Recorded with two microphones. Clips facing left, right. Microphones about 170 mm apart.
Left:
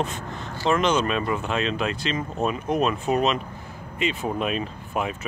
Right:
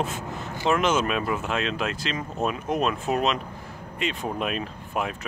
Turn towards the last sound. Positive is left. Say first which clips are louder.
# left 1 dB
turn(degrees=0)  # may be behind; listen again after turning